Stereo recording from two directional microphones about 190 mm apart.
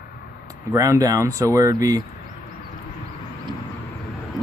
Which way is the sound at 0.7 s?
15° right (ahead or behind).